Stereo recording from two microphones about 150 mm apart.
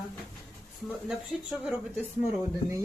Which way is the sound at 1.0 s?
5° right (ahead or behind).